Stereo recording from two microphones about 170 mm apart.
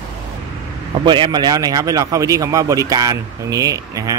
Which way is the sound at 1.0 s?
25° right (ahead or behind).